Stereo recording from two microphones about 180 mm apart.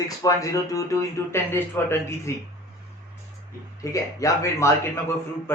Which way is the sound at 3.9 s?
15° left (ahead or behind).